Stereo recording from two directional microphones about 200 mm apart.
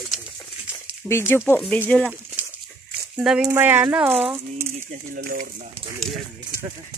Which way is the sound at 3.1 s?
5° right (ahead or behind).